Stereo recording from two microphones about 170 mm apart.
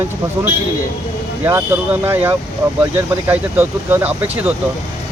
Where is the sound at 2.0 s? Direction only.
15° right (ahead or behind).